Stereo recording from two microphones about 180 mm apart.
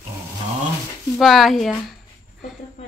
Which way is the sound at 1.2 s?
Centre (ahead or behind).